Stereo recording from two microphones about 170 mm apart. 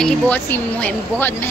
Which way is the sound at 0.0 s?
10° left (ahead or behind).